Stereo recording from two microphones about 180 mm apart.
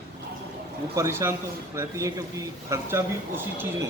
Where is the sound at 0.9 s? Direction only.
15° right (ahead or behind).